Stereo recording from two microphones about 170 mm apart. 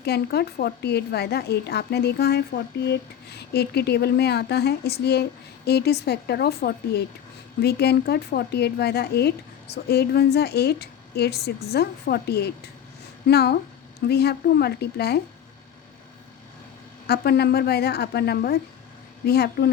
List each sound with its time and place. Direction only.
0.0 s a woman's voice: 70° left (ahead or behind)
17.1 s a woman's voice: 70° left (ahead or behind)